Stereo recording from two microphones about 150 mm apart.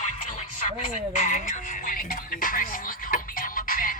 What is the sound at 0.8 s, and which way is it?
Speech, 55° left (ahead or behind).